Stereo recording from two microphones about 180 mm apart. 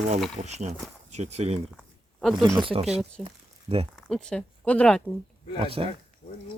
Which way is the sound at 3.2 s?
30° right (ahead or behind).